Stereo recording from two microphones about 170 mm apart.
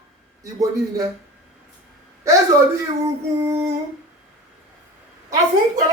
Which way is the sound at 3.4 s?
15° right (ahead or behind).